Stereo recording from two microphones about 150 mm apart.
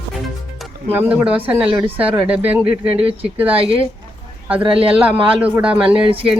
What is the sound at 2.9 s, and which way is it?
Speech, 40° right (ahead or behind).